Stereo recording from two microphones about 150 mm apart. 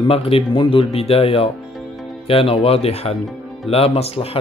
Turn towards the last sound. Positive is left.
turn(degrees=40)  # may be behind; listen again after turning